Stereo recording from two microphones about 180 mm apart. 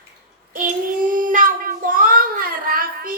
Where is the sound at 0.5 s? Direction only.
50° right (ahead or behind).